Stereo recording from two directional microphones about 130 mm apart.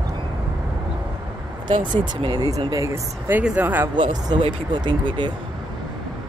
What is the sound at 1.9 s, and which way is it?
Speech, 35° right (ahead or behind).